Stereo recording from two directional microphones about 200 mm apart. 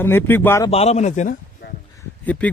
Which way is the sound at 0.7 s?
30° left (ahead or behind).